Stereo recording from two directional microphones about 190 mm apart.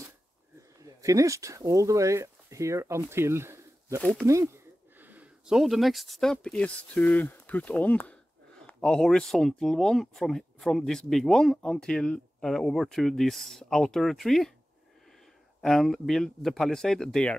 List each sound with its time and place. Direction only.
0.6 s speech: 15° right (ahead or behind)
4.0 s speech: 5° left (ahead or behind)
4.9 s speech: 10° right (ahead or behind)
15.6 s speech: centre (ahead or behind)